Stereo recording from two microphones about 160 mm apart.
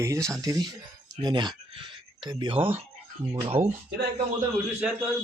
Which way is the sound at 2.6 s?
10° right (ahead or behind).